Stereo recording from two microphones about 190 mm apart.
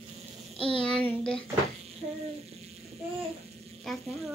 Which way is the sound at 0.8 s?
5° left (ahead or behind).